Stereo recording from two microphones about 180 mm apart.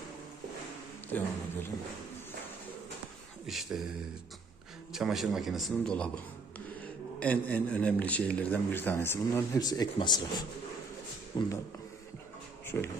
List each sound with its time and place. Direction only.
3.4 s a man's voice: centre (ahead or behind)
4.9 s a man's voice: centre (ahead or behind)
7.2 s a man's voice: 10° left (ahead or behind)
12.6 s a sound: 15° left (ahead or behind)